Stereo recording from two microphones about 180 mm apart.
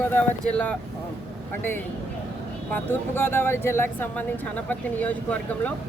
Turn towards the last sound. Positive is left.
turn(degrees=10)  # may be behind; listen again after turning